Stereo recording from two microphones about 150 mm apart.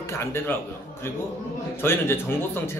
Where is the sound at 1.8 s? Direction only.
15° left (ahead or behind).